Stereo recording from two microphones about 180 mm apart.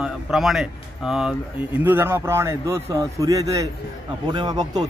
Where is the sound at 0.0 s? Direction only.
Centre (ahead or behind).